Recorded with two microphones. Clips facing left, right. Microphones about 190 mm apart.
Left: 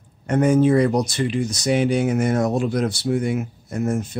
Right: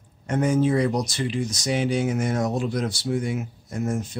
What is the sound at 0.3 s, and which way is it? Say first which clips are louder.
Speech: left 5 dB; 60° left (ahead or behind).